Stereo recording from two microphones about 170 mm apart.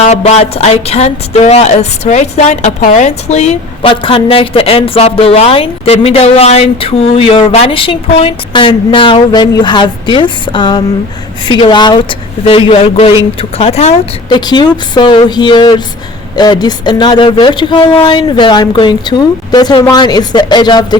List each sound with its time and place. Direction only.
0.0 s speech: 40° left (ahead or behind)